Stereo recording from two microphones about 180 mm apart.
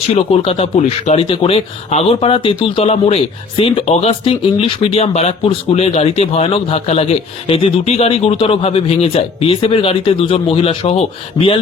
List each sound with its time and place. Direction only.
0.2 s speech: 30° left (ahead or behind)